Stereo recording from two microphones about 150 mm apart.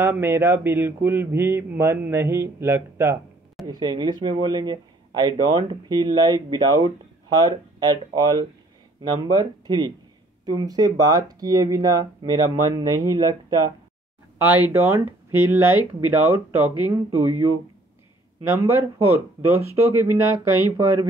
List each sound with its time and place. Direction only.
0.0 s mantra: 15° right (ahead or behind)
3.6 s speech: 30° right (ahead or behind)
14.7 s mantra: 15° right (ahead or behind)
18.5 s speech: 20° right (ahead or behind)
19.7 s mantra: 15° right (ahead or behind)